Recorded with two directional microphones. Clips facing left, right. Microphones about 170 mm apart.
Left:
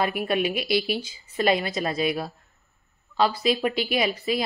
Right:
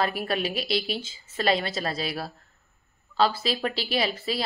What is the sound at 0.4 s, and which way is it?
Speech, 35° right (ahead or behind).